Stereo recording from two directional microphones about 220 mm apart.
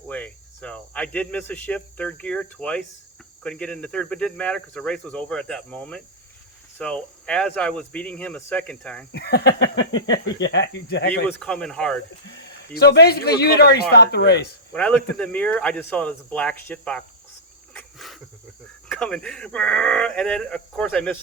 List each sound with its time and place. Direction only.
0.1 s cricket: 5° left (ahead or behind)
3.4 s speech: 5° left (ahead or behind)
9.1 s speech: 45° left (ahead or behind)
11.3 s speech: 5° left (ahead or behind)
12.3 s speech: 45° left (ahead or behind)
14.7 s speech: 5° left (ahead or behind)
17.7 s cricket: centre (ahead or behind)
18.9 s speech: 5° left (ahead or behind)